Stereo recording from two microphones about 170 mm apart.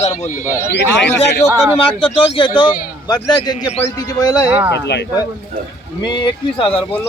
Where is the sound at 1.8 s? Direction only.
30° left (ahead or behind).